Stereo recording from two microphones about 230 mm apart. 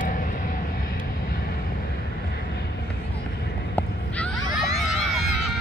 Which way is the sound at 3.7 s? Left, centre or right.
Centre.